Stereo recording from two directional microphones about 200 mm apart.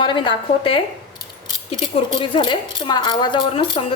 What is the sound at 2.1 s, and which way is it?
A woman's voice, 25° left (ahead or behind).